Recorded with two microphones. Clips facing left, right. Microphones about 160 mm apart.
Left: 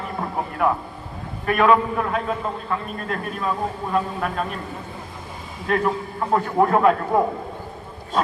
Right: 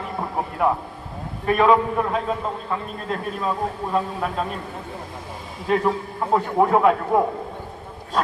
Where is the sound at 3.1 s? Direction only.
Centre (ahead or behind).